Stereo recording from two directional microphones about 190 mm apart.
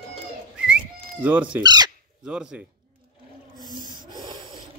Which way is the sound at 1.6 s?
20° right (ahead or behind).